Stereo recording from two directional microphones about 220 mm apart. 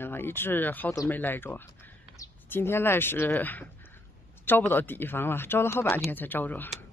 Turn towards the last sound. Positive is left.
turn(degrees=10)  # may be behind; listen again after turning